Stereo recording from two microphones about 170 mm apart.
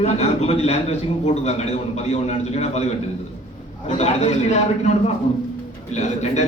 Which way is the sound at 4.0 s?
40° left (ahead or behind).